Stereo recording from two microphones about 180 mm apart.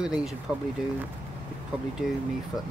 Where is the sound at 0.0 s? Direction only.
5° right (ahead or behind).